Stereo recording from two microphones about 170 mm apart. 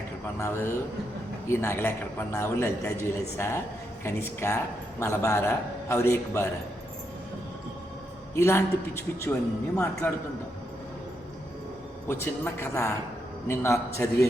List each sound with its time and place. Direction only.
0.3 s a man's voice: 15° left (ahead or behind)
8.4 s a man's voice: 15° left (ahead or behind)
12.0 s a man's voice: 15° left (ahead or behind)